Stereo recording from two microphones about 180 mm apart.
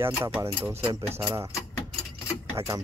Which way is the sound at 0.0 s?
15° right (ahead or behind).